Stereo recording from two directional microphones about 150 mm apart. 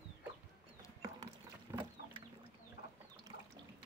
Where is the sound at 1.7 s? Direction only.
15° right (ahead or behind).